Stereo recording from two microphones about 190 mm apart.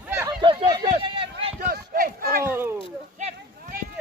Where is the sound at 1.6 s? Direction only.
50° right (ahead or behind).